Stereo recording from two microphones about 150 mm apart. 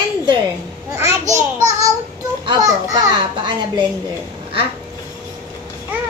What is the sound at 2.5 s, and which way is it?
A child's voice, 25° right (ahead or behind).